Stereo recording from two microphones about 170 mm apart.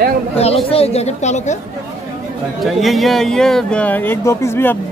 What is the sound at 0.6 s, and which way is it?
Speech, 35° left (ahead or behind).